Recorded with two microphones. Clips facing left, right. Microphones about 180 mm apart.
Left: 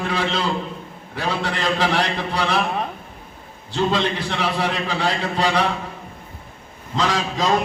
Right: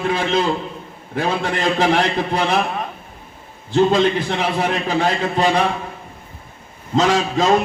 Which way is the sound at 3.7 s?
50° right (ahead or behind).